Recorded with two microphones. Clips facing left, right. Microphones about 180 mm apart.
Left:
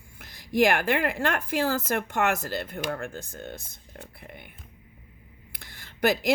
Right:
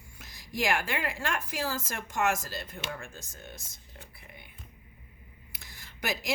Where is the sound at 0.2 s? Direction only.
55° left (ahead or behind).